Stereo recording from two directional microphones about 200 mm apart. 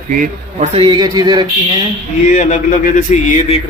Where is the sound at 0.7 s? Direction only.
20° right (ahead or behind).